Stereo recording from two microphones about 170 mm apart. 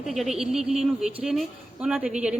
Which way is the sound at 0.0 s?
Centre (ahead or behind).